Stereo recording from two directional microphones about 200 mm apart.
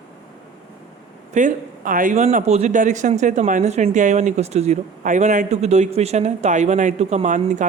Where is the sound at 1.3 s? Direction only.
40° right (ahead or behind).